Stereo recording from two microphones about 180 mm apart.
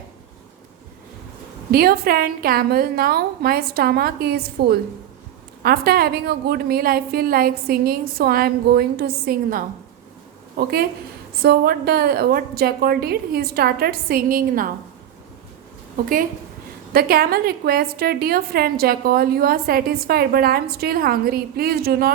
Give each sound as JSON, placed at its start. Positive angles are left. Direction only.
{"t": 1.7, "sound": "a woman's voice", "side_deg": -55}
{"t": 16.9, "sound": "a woman's voice", "side_deg": -55}